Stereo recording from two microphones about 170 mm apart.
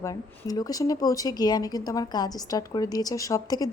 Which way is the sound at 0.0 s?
20° left (ahead or behind).